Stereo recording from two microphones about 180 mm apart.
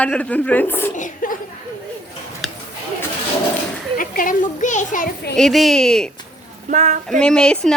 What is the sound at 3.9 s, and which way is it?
A child's voice, 50° left (ahead or behind).